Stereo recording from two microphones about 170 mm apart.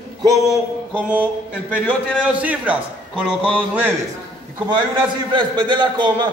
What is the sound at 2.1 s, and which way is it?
A man's voice, 10° right (ahead or behind).